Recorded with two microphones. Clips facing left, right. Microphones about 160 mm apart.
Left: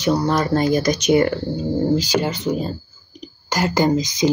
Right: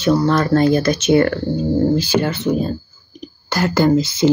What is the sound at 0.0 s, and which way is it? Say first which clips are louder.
Speech: right 3 dB; 15° left (ahead or behind).